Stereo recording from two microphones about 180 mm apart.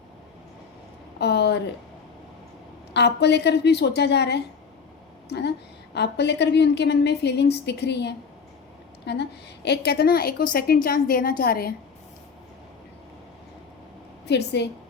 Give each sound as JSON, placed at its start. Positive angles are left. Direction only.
{"t": 1.2, "sound": "a sound", "side_deg": 70}
{"t": 2.9, "sound": "a woman's voice", "side_deg": 70}
{"t": 14.3, "sound": "a woman's voice", "side_deg": 70}